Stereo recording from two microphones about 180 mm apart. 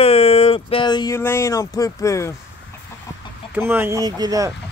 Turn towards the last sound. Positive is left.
turn(degrees=-20)  # may be behind; listen again after turning